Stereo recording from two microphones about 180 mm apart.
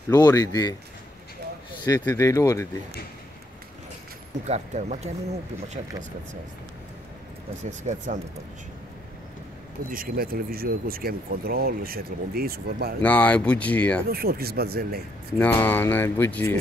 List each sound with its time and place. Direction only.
0.1 s speech: 20° left (ahead or behind)
1.9 s speech: 15° left (ahead or behind)
4.5 s speech: 40° right (ahead or behind)
7.6 s speech: 40° right (ahead or behind)
9.8 s speech: 55° right (ahead or behind)
13.0 s speech: 10° left (ahead or behind)
14.1 s speech: 60° right (ahead or behind)
15.3 s speech: 10° left (ahead or behind)